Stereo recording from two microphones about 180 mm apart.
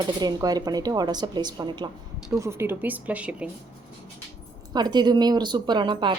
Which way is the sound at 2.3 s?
15° right (ahead or behind).